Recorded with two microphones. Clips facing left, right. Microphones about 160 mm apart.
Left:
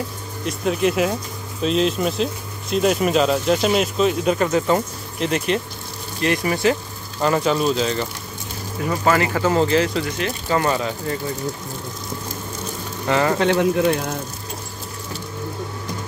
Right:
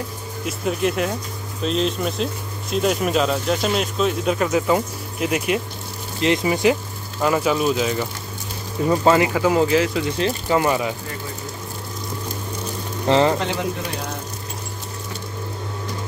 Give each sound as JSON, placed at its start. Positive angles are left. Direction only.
{"t": 0.5, "sound": "speech", "side_deg": 0}
{"t": 7.2, "sound": "speech", "side_deg": -5}
{"t": 8.8, "sound": "speech", "side_deg": -25}
{"t": 10.0, "sound": "speech", "side_deg": -30}
{"t": 10.5, "sound": "speech", "side_deg": -15}
{"t": 13.0, "sound": "speech", "side_deg": -25}
{"t": 13.4, "sound": "speech", "side_deg": 60}